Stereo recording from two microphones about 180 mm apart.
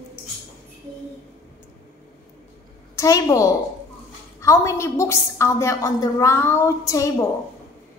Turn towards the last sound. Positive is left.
turn(degrees=20)  # may be behind; listen again after turning